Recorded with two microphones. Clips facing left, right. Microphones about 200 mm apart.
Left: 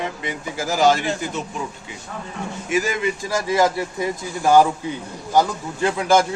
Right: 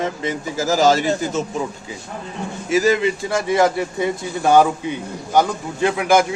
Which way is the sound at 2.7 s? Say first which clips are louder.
Right 5 dB; 40° right (ahead or behind).